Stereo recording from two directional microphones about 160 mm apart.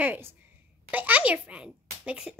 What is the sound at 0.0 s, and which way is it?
A child's voice, 10° right (ahead or behind).